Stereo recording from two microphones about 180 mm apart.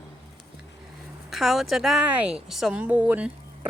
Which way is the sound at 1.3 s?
Centre (ahead or behind).